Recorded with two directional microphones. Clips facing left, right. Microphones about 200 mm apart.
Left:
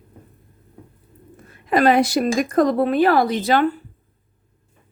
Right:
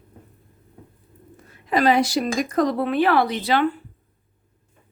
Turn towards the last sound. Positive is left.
turn(degrees=45)  # may be behind; listen again after turning